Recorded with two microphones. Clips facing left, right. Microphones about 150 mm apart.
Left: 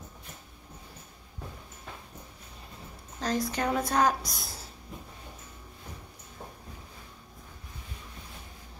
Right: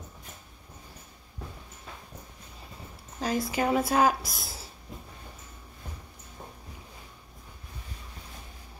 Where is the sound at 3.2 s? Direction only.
5° right (ahead or behind).